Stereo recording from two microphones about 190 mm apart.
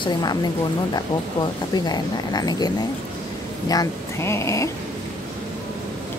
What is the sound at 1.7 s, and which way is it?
Speech, 20° left (ahead or behind).